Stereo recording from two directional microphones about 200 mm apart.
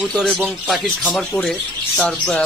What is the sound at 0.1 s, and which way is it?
Speech, 5° left (ahead or behind).